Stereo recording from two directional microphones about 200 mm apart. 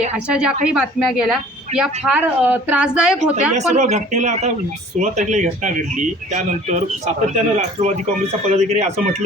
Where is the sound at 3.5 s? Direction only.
35° right (ahead or behind).